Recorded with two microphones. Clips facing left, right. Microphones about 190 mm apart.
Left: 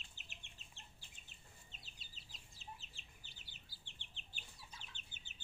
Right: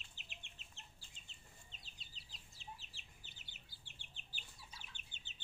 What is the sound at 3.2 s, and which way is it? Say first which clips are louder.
Chicken: even; 20° right (ahead or behind).